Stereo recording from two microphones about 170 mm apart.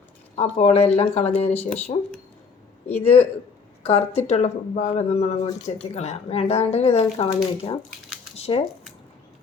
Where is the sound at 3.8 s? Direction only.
35° left (ahead or behind).